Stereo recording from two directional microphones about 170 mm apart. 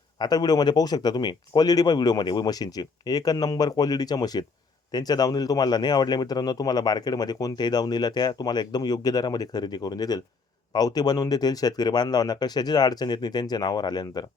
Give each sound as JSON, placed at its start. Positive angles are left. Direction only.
{"t": 0.2, "sound": "speech", "side_deg": 25}